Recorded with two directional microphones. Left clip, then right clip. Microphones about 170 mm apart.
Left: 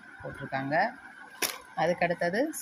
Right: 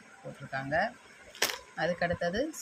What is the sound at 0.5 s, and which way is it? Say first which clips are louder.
Speech: left 3 dB; 15° left (ahead or behind).